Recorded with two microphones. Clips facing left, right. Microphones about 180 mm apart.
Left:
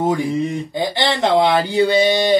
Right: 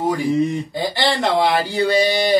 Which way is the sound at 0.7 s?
25° left (ahead or behind).